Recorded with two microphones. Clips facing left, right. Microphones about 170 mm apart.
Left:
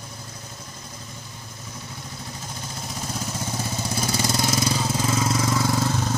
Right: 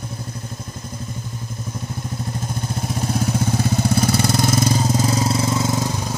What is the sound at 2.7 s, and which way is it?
Vehicle, 60° right (ahead or behind).